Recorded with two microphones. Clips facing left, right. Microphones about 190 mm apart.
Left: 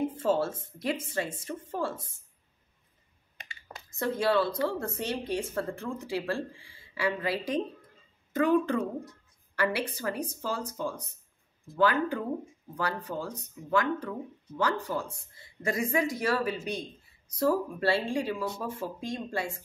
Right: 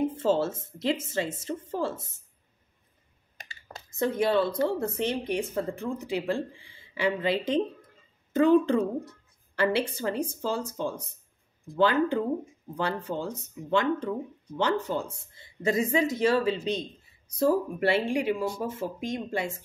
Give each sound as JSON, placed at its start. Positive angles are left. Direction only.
{"t": 0.2, "sound": "speech", "side_deg": -25}
{"t": 3.9, "sound": "speech", "side_deg": -20}